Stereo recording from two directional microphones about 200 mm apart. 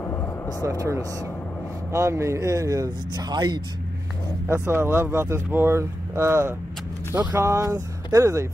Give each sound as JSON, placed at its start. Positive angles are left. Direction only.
{"t": 0.0, "sound": "vehicle", "side_deg": 15}
{"t": 0.7, "sound": "speech", "side_deg": -15}